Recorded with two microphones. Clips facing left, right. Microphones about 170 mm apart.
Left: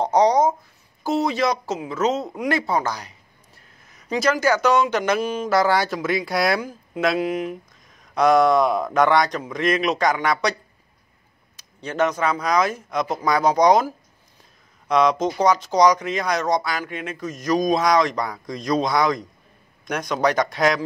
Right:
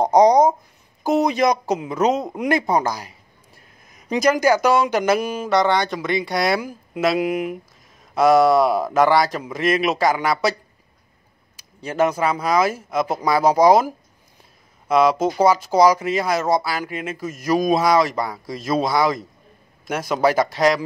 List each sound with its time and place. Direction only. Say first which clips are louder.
0.0 s speech: right 4 dB; 15° right (ahead or behind)
5.5 s speech: right 1 dB; 5° left (ahead or behind)
11.5 s speech: right 2 dB; 10° right (ahead or behind)